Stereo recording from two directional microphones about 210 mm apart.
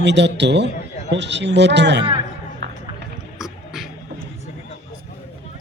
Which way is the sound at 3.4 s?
Centre (ahead or behind).